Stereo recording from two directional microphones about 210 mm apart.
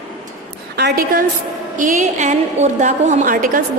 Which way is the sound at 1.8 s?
35° right (ahead or behind).